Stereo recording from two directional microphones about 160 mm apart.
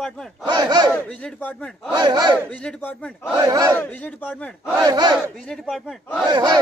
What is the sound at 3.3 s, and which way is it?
Speech, 25° right (ahead or behind).